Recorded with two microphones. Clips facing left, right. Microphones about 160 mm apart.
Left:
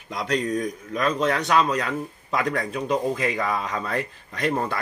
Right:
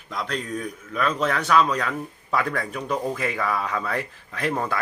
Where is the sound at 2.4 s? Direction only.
15° left (ahead or behind).